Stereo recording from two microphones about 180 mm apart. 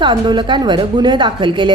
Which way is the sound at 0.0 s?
25° right (ahead or behind).